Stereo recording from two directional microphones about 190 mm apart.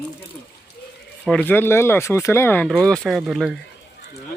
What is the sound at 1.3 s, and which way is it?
Speech, 10° left (ahead or behind).